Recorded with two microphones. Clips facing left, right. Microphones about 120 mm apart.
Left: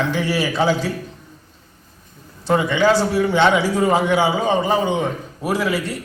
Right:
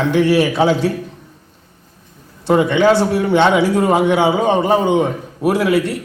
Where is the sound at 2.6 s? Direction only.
60° right (ahead or behind).